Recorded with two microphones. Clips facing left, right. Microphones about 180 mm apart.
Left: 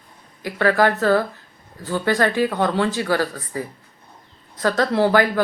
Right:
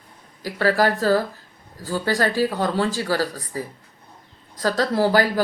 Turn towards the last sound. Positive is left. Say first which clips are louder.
# left 2 dB
turn(degrees=-35)  # may be behind; listen again after turning